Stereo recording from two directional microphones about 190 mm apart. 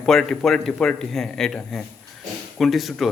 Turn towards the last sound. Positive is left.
turn(degrees=0)  # may be behind; listen again after turning